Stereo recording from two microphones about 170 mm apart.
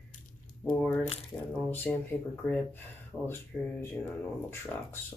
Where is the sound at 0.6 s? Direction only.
10° left (ahead or behind).